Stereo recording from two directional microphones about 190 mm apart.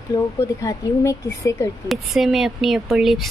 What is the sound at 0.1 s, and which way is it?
A woman's voice, 25° left (ahead or behind).